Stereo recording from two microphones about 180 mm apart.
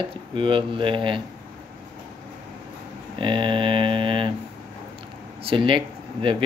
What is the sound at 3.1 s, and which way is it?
Mantra, 30° right (ahead or behind).